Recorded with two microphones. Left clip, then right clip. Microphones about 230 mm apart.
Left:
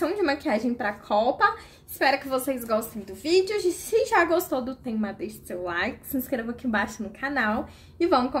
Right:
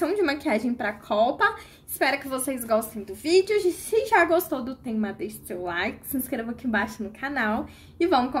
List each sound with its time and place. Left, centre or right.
0.0 s a woman's voice: centre